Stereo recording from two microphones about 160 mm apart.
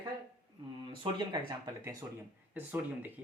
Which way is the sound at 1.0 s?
30° right (ahead or behind).